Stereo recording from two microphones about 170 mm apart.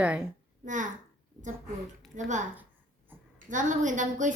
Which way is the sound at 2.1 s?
45° right (ahead or behind).